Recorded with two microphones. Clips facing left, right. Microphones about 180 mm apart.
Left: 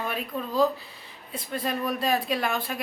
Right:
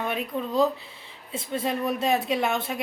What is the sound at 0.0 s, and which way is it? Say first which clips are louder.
A woman's voice: right 2 dB; 20° right (ahead or behind).